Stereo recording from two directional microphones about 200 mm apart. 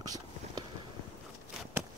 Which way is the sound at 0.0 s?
20° right (ahead or behind).